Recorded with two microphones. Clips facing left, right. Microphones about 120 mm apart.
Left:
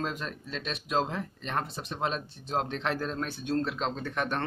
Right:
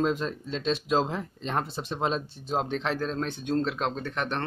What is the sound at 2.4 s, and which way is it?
Speech, centre (ahead or behind).